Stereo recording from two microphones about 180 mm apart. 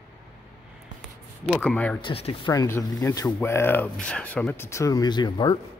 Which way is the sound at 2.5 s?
15° left (ahead or behind).